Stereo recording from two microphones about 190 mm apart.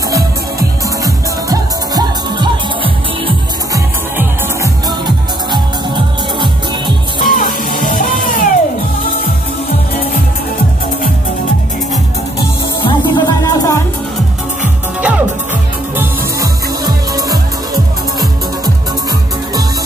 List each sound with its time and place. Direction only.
1.0 s music: 20° right (ahead or behind)
4.8 s music: 25° right (ahead or behind)
7.2 s music: 50° left (ahead or behind)
12.8 s music: 20° left (ahead or behind)
15.0 s music: 5° right (ahead or behind)
16.0 s music: 15° right (ahead or behind)